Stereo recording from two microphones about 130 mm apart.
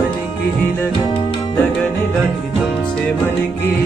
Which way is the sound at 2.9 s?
15° left (ahead or behind).